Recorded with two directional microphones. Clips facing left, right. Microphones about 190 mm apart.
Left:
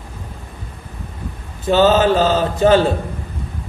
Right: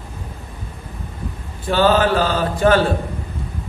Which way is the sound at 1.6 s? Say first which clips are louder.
Left 3 dB; 25° left (ahead or behind).